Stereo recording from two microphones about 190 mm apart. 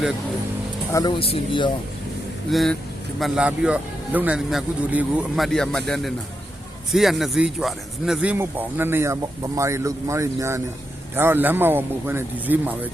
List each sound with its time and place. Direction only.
0.9 s speech: 25° left (ahead or behind)
2.5 s speech: centre (ahead or behind)